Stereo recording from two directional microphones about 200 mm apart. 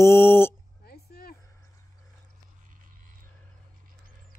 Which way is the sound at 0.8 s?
50° left (ahead or behind).